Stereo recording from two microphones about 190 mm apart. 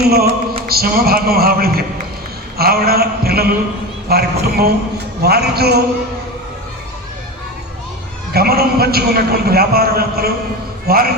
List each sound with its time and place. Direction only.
0.0 s music: 55° right (ahead or behind)
0.7 s a man's voice: 55° right (ahead or behind)
2.6 s a sound: 55° right (ahead or behind)
8.3 s a man's voice: 55° right (ahead or behind)